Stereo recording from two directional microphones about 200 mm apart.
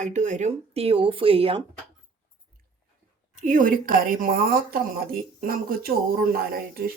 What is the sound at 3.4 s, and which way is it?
A woman's voice, 40° right (ahead or behind).